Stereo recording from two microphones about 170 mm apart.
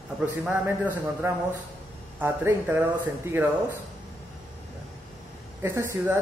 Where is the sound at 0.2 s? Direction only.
10° right (ahead or behind).